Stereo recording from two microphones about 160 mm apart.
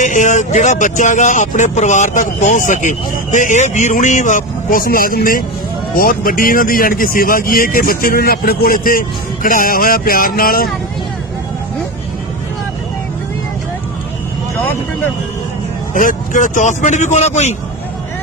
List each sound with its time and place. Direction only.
0.0 s speech: 50° left (ahead or behind)
14.5 s speech: 10° left (ahead or behind)
16.0 s speech: 55° left (ahead or behind)